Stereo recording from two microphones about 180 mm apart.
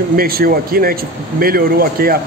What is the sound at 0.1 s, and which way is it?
Speech, 55° right (ahead or behind).